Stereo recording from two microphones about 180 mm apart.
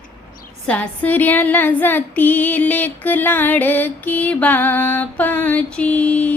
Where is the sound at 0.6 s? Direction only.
10° left (ahead or behind).